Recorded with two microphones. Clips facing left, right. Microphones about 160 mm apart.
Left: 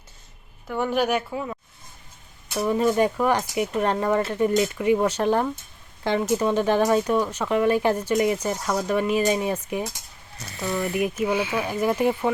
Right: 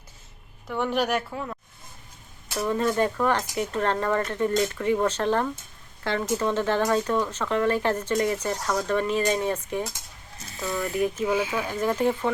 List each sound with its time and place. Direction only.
0.7 s a woman's voice: 5° left (ahead or behind)
2.6 s speech: 15° left (ahead or behind)
10.3 s speech: 70° left (ahead or behind)
10.9 s speech: 15° left (ahead or behind)